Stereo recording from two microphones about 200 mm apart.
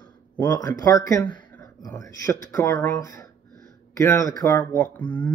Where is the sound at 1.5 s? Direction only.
15° left (ahead or behind).